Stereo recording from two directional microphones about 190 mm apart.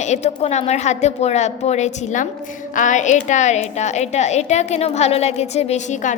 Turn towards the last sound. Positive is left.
turn(degrees=35)  # may be behind; listen again after turning